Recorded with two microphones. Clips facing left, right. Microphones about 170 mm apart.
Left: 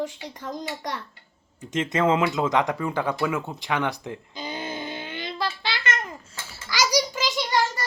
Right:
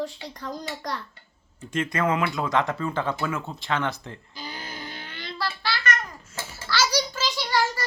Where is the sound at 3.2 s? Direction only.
15° left (ahead or behind).